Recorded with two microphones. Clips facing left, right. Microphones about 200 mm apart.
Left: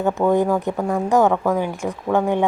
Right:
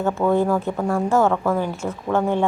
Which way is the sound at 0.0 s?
15° left (ahead or behind).